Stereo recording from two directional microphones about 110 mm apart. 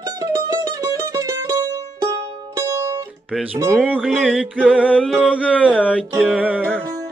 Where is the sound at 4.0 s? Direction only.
5° left (ahead or behind).